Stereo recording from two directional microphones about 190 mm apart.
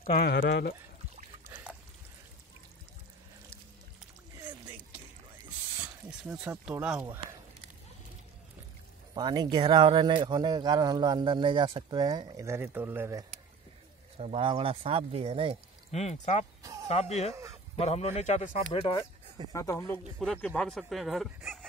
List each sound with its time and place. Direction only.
0.0 s speech: 50° left (ahead or behind)
4.4 s music: 20° right (ahead or behind)
6.0 s speech: 5° right (ahead or behind)
9.1 s speech: 20° right (ahead or behind)
14.1 s speech: 30° right (ahead or behind)
15.9 s a man's voice: 35° left (ahead or behind)
17.3 s speech: 15° right (ahead or behind)
17.7 s a man's voice: 35° left (ahead or behind)
18.7 s speech: 25° left (ahead or behind)
19.5 s speech: 15° left (ahead or behind)
20.0 s speech: centre (ahead or behind)